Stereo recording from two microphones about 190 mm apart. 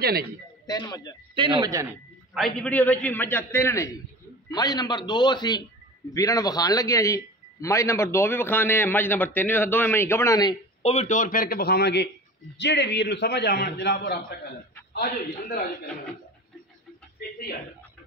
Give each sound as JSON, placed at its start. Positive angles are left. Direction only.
{"t": 0.0, "sound": "a man's voice", "side_deg": -55}
{"t": 0.7, "sound": "a man's voice", "side_deg": 20}
{"t": 1.3, "sound": "speech", "side_deg": -25}
{"t": 2.3, "sound": "a man's voice", "side_deg": 5}
{"t": 10.8, "sound": "a man's voice", "side_deg": 35}